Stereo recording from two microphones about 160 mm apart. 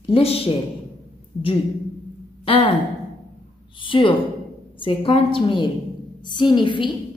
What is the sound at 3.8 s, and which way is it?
A woman's voice, 30° left (ahead or behind).